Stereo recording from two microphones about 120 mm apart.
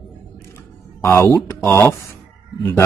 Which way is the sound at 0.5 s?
20° left (ahead or behind).